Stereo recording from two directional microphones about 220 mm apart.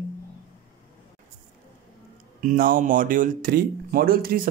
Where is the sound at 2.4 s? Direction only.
40° right (ahead or behind).